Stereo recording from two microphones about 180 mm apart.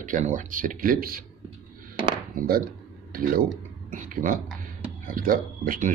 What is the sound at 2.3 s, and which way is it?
Speech, 55° right (ahead or behind).